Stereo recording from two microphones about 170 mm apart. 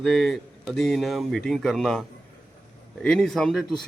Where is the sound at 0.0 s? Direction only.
Centre (ahead or behind).